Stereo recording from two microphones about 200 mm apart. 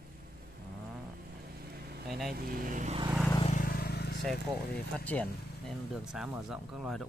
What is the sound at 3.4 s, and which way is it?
Vehicle, 40° left (ahead or behind).